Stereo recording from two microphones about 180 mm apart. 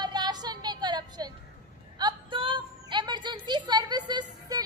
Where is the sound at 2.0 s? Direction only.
30° right (ahead or behind).